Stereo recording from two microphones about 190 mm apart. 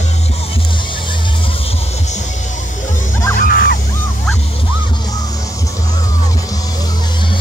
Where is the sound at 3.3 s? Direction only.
50° left (ahead or behind).